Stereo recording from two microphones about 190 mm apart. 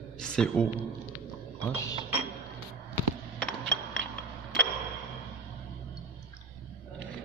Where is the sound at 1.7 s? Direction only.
15° left (ahead or behind).